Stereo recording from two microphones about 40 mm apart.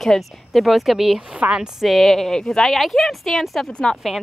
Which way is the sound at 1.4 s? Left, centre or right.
Right.